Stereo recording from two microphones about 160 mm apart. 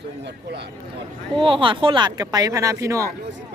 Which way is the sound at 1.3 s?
35° right (ahead or behind).